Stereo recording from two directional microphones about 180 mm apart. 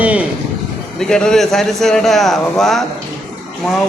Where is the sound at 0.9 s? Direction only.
5° left (ahead or behind).